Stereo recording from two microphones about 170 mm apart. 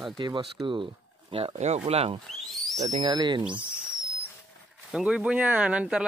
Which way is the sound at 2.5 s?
Centre (ahead or behind).